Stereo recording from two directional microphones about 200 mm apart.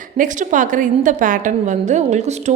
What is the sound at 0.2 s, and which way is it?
A woman's voice, 40° right (ahead or behind).